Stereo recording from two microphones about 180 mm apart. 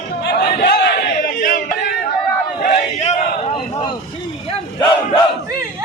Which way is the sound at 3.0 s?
35° left (ahead or behind).